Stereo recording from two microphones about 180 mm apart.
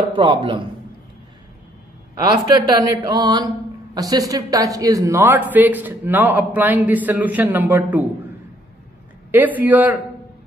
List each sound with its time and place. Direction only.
0.1 s a man's voice: 25° right (ahead or behind)
2.2 s speech: 20° right (ahead or behind)
9.3 s speech: 10° right (ahead or behind)